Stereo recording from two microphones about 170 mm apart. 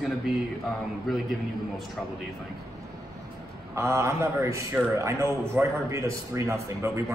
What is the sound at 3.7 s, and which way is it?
A man's voice, 15° right (ahead or behind).